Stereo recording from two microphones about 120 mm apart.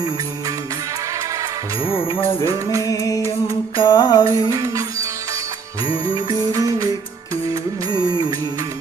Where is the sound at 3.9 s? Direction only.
35° left (ahead or behind).